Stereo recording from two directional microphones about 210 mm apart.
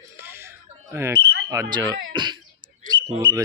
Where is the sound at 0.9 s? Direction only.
10° right (ahead or behind).